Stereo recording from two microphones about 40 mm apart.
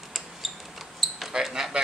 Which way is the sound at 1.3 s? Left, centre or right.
Centre.